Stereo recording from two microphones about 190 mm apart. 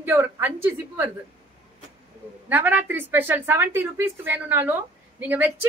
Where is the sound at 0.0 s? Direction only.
10° right (ahead or behind).